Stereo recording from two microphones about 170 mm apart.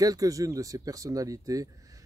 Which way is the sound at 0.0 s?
20° right (ahead or behind).